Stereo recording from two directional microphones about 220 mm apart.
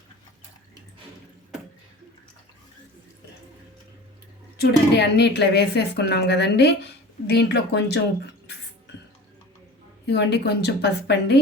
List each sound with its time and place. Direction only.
4.5 s a woman's voice: 50° left (ahead or behind)
10.1 s a woman's voice: 50° left (ahead or behind)